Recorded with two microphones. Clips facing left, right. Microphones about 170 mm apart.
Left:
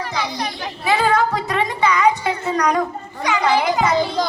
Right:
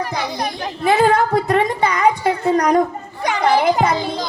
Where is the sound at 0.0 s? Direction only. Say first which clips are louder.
Right 2 dB; 50° right (ahead or behind).